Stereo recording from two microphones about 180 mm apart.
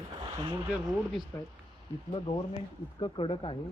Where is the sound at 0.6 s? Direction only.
Centre (ahead or behind).